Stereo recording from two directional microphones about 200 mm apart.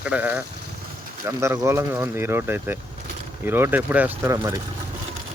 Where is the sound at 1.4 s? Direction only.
15° right (ahead or behind).